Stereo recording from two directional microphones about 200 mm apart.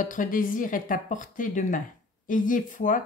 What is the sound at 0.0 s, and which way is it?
Speech, 40° left (ahead or behind).